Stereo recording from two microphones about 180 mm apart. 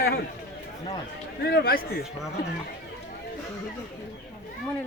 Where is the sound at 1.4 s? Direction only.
65° left (ahead or behind).